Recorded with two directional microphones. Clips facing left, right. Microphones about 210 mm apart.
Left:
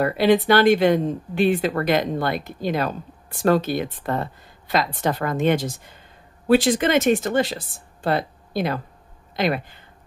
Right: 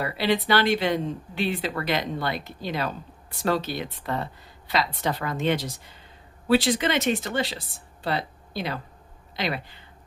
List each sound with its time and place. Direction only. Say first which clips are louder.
0.0 s speech: left 7 dB; 50° left (ahead or behind)